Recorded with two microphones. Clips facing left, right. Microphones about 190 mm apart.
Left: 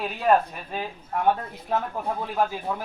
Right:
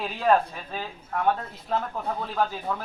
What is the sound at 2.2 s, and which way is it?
Speech, 10° left (ahead or behind).